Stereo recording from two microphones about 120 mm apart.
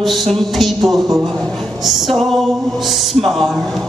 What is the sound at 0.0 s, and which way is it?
Speech, centre (ahead or behind).